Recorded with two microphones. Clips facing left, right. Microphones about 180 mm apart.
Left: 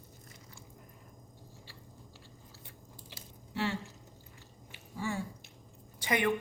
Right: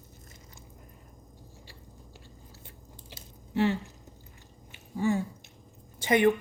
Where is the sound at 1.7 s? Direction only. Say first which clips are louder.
Right 2 dB; 15° right (ahead or behind).